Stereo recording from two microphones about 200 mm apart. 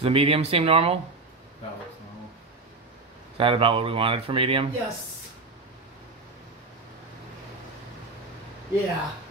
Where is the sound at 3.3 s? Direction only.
25° right (ahead or behind).